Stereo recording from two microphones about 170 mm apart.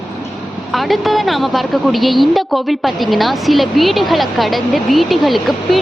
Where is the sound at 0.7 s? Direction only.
Centre (ahead or behind).